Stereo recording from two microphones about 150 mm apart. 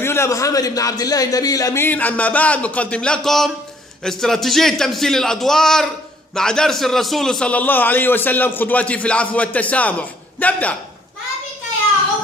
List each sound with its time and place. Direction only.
0.0 s a man's voice: 15° left (ahead or behind)